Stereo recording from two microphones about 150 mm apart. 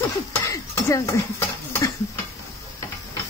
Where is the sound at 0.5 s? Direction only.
20° left (ahead or behind).